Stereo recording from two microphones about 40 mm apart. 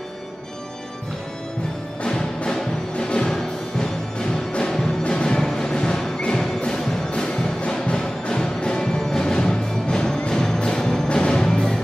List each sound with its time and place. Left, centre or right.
2.0 s music: centre
4.5 s music: left
5.4 s music: centre